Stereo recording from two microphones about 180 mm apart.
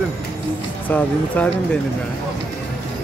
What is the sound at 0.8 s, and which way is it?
Speech, 10° left (ahead or behind).